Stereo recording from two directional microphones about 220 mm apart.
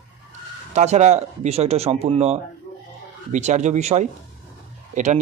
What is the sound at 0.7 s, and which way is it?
Speech, 30° right (ahead or behind).